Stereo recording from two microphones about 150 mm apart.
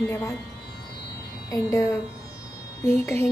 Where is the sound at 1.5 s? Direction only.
20° left (ahead or behind).